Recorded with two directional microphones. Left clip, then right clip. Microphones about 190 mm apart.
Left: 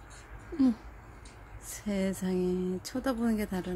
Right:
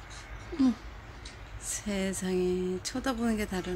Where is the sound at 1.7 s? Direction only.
20° left (ahead or behind).